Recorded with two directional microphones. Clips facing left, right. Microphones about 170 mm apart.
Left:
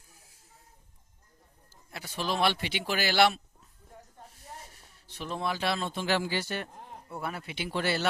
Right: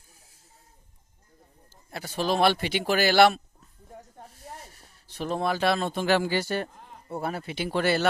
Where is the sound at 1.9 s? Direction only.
40° right (ahead or behind).